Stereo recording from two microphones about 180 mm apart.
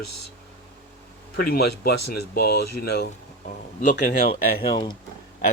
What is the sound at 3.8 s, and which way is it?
Speech, 45° left (ahead or behind).